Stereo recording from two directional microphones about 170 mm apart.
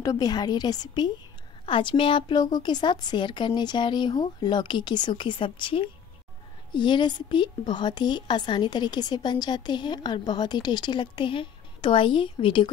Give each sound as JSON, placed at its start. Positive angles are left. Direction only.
{"t": 0.0, "sound": "a woman's voice", "side_deg": 20}